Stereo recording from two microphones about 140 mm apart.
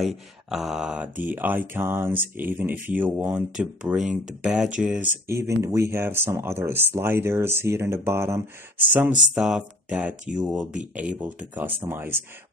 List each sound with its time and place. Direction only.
0.0 s speech: centre (ahead or behind)
5.3 s speech: 20° right (ahead or behind)